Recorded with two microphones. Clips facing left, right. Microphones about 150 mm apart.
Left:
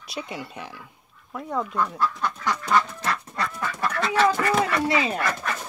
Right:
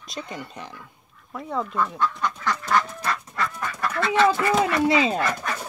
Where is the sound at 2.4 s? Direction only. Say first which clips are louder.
Left 1 dB; 15° left (ahead or behind).